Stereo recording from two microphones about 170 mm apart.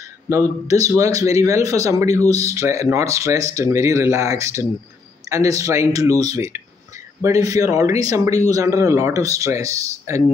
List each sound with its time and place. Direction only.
0.3 s a man's voice: 20° right (ahead or behind)